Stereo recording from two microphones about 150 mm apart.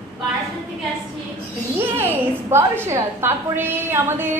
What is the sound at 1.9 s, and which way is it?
A woman's voice, 15° right (ahead or behind).